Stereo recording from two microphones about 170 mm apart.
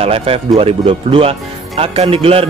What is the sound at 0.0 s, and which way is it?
Speech, 35° right (ahead or behind).